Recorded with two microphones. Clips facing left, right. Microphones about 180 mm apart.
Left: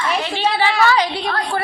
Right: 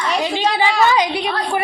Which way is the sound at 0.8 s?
20° right (ahead or behind).